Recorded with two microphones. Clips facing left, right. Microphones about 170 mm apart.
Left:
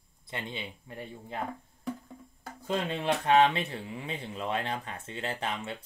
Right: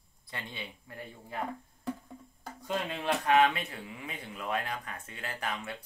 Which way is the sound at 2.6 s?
25° left (ahead or behind).